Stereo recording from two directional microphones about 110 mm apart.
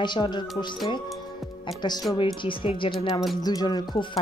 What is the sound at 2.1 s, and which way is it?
Speech, 50° left (ahead or behind).